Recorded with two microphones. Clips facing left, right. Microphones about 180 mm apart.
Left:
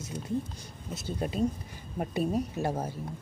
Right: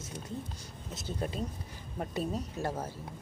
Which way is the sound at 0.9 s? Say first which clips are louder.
Left 4 dB; 10° left (ahead or behind).